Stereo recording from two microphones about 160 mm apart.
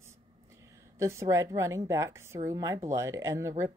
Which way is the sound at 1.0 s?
15° right (ahead or behind).